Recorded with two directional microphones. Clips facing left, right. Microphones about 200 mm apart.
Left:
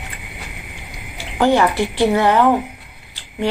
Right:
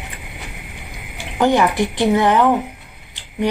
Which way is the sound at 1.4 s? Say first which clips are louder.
Even; 15° right (ahead or behind).